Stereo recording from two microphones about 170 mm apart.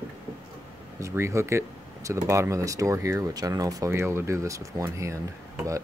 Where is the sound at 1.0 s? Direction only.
15° right (ahead or behind).